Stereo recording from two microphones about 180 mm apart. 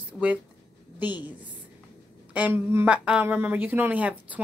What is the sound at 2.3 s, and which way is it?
Speech, 10° right (ahead or behind).